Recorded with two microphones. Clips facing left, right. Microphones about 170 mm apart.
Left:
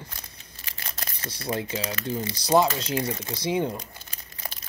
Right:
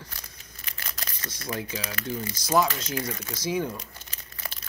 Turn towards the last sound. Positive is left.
turn(degrees=20)  # may be behind; listen again after turning